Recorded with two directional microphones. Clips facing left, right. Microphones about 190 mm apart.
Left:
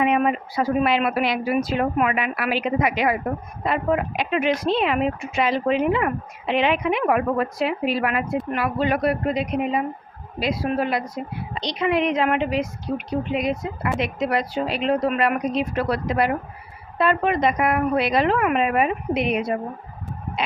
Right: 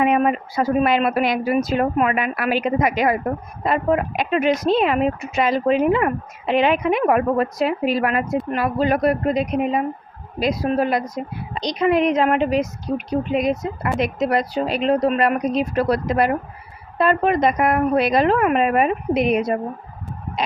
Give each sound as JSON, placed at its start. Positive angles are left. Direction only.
{"t": 0.0, "sound": "speech", "side_deg": -45}